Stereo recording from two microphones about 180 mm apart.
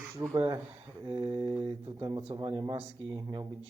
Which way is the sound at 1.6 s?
25° right (ahead or behind).